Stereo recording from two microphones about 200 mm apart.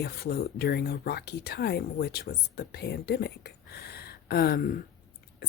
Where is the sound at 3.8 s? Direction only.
50° left (ahead or behind).